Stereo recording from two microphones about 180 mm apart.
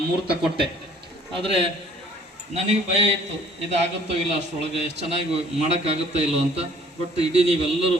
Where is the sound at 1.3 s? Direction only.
30° right (ahead or behind).